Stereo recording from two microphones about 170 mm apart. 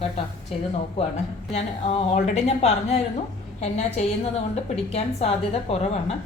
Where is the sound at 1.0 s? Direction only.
35° left (ahead or behind).